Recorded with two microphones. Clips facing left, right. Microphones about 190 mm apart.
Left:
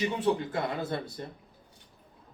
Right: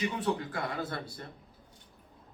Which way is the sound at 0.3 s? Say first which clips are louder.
Left 3 dB; 25° left (ahead or behind).